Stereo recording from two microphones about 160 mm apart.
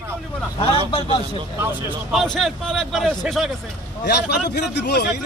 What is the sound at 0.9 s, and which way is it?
Speech, 35° left (ahead or behind).